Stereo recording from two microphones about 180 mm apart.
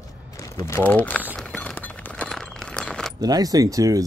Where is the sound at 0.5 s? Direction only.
15° left (ahead or behind).